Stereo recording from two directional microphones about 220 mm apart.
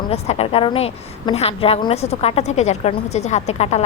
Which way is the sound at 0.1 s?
25° left (ahead or behind).